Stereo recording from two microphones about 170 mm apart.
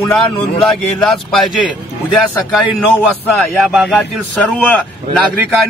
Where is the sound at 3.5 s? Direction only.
Centre (ahead or behind).